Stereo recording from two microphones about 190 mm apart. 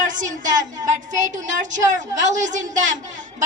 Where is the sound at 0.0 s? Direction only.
40° right (ahead or behind).